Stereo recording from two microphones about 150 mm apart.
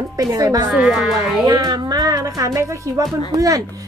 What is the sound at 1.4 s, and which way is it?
Speech, 25° right (ahead or behind).